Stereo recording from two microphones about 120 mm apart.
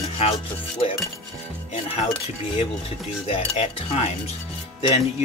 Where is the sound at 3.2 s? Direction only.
55° left (ahead or behind).